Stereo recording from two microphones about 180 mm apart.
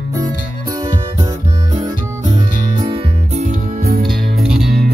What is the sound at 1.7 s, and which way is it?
Music, 25° right (ahead or behind).